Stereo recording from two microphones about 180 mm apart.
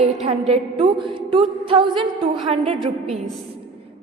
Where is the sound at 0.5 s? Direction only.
30° right (ahead or behind).